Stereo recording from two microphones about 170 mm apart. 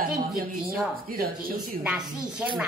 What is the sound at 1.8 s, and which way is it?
Speech, 5° right (ahead or behind).